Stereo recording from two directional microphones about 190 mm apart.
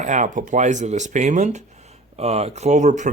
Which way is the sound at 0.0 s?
40° right (ahead or behind).